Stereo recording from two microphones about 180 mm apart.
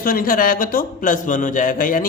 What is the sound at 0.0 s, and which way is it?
A man's voice, 50° left (ahead or behind).